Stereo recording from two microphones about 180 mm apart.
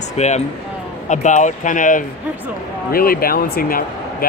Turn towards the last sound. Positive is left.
turn(degrees=55)  # may be behind; listen again after turning